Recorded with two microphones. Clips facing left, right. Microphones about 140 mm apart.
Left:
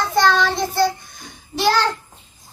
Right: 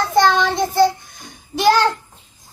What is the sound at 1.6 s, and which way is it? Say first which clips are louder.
Child singing: right 4 dB; 15° right (ahead or behind).